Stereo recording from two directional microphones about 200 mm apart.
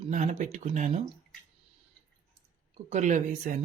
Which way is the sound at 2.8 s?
35° right (ahead or behind).